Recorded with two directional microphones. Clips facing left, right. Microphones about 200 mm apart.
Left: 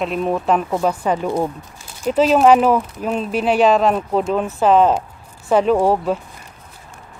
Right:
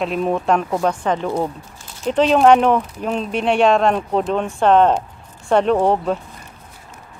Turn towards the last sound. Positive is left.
turn(degrees=5)  # may be behind; listen again after turning